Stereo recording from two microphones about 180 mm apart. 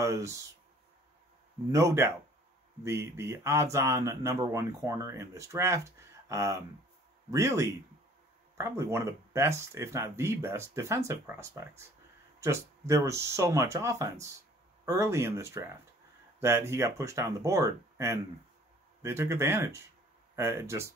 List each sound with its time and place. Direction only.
0.0 s speech: 15° right (ahead or behind)
1.7 s speech: 15° right (ahead or behind)